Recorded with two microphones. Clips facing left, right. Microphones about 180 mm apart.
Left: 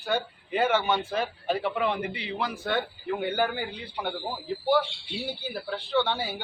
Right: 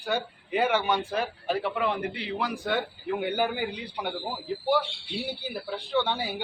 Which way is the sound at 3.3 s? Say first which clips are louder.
Even; 15° right (ahead or behind).